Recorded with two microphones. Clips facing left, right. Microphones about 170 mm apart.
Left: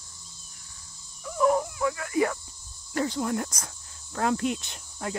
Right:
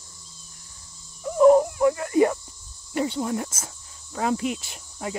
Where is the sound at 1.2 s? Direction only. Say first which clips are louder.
Right 8 dB; 30° right (ahead or behind).